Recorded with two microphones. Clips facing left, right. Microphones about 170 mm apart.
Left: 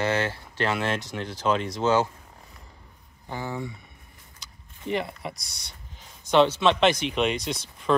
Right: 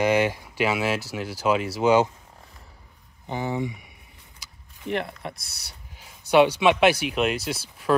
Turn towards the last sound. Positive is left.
turn(degrees=-5)  # may be behind; listen again after turning